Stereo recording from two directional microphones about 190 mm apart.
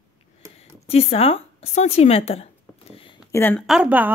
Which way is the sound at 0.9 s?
30° left (ahead or behind).